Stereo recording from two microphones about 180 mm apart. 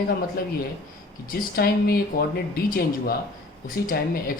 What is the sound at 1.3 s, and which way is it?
A woman's voice, 60° left (ahead or behind).